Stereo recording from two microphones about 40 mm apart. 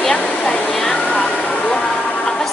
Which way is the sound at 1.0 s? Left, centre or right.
Left.